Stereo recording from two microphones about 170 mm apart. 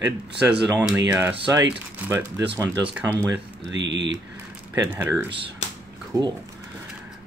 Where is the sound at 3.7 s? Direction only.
90° right.